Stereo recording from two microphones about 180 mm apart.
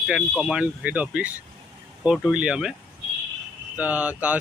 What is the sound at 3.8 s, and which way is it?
Speech, 10° right (ahead or behind).